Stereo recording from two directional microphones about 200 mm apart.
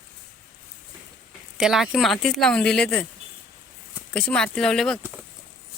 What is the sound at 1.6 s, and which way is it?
A woman's voice, centre (ahead or behind).